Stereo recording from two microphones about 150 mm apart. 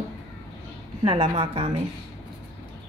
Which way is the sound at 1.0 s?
40° right (ahead or behind).